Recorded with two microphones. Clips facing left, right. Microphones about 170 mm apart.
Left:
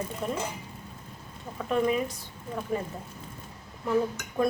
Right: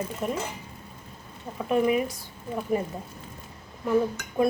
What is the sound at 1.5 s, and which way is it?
Speech, 10° right (ahead or behind).